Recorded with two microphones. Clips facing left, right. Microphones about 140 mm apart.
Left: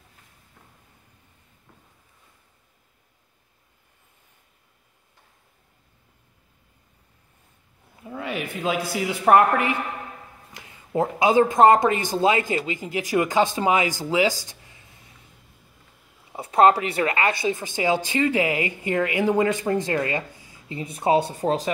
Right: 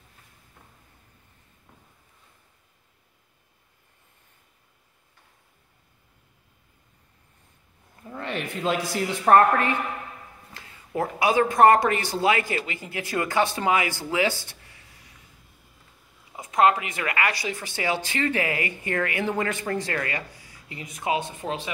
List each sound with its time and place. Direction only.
7.9 s speech: 10° left (ahead or behind)
14.4 s a sound: 20° left (ahead or behind)
16.3 s speech: 30° left (ahead or behind)